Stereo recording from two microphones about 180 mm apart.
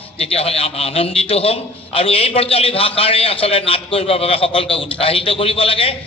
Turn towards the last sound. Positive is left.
turn(degrees=30)  # may be behind; listen again after turning